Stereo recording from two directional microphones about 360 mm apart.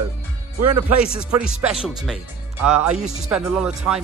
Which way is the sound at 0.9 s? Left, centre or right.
Centre.